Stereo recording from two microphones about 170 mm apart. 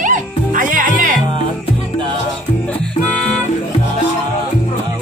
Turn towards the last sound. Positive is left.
turn(degrees=5)  # may be behind; listen again after turning